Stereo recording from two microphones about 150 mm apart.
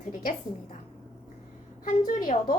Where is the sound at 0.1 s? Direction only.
65° left (ahead or behind).